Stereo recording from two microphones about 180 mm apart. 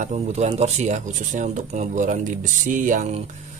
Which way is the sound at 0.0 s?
40° right (ahead or behind).